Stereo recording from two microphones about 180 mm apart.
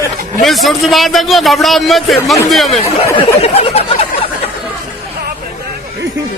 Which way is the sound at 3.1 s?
35° left (ahead or behind).